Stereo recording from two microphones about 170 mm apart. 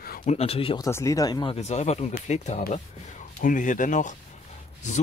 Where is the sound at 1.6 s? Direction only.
40° left (ahead or behind).